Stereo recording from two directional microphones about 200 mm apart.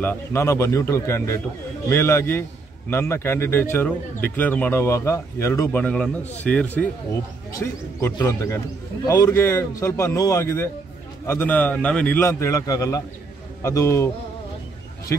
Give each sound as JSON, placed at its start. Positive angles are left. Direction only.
{"t": 0.0, "sound": "a man's voice", "side_deg": 10}